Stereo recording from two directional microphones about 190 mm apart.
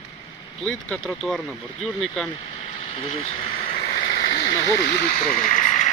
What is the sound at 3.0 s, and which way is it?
Speech, 30° left (ahead or behind).